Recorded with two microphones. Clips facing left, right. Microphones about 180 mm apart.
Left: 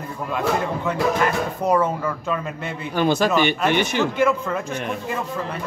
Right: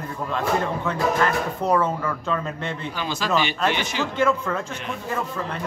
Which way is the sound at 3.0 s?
55° left (ahead or behind).